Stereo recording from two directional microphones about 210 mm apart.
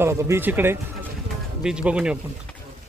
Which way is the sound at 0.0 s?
15° right (ahead or behind).